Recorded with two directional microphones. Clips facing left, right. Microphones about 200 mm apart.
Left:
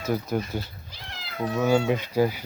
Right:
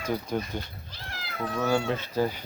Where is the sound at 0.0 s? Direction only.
10° left (ahead or behind).